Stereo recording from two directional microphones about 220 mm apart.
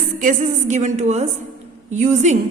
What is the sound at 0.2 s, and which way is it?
A woman's voice, 35° right (ahead or behind).